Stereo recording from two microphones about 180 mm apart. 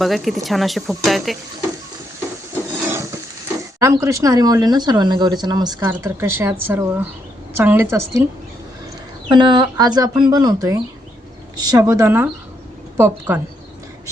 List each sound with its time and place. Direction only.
0.0 s speech: centre (ahead or behind)
3.8 s speech: 15° right (ahead or behind)
9.3 s speech: 25° right (ahead or behind); by 13.4 s 10° right (ahead or behind)